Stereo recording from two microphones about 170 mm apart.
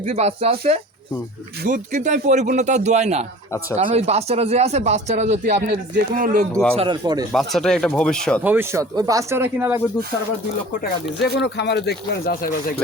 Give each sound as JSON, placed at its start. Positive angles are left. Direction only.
{"t": 0.0, "sound": "speech", "side_deg": -40}
{"t": 1.6, "sound": "speech", "side_deg": -50}
{"t": 6.7, "sound": "a man's voice", "side_deg": -25}
{"t": 7.3, "sound": "speech", "side_deg": 0}
{"t": 8.4, "sound": "speech", "side_deg": -15}
{"t": 11.2, "sound": "speech", "side_deg": 80}